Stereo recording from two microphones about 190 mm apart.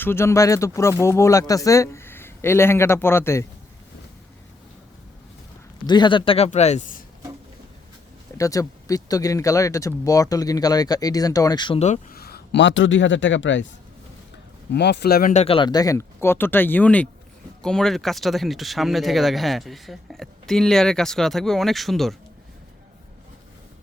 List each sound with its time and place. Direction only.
0.0 s speech: 15° left (ahead or behind)
5.8 s a man's voice: 25° left (ahead or behind); by 7.0 s 40° left (ahead or behind)
8.4 s speech: 15° left (ahead or behind)
11.8 s speech: 40° left (ahead or behind); by 13.7 s 75° left (ahead or behind)
14.7 s speech: 60° left (ahead or behind)
15.3 s speech: 35° left (ahead or behind); by 22.1 s centre (ahead or behind)